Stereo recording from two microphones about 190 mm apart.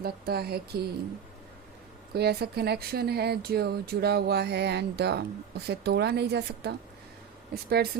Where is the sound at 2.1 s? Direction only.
55° right (ahead or behind).